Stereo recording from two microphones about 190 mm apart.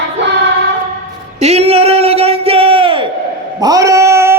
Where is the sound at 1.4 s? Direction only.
35° right (ahead or behind).